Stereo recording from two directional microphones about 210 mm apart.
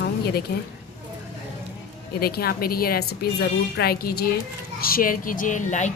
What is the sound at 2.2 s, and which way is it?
A woman's voice, 45° left (ahead or behind).